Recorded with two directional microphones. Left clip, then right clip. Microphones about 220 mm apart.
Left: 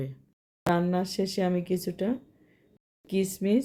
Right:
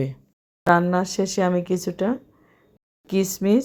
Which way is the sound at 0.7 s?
10° right (ahead or behind).